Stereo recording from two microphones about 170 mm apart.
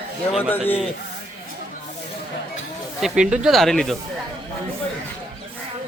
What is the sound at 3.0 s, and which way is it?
Speech, 5° right (ahead or behind).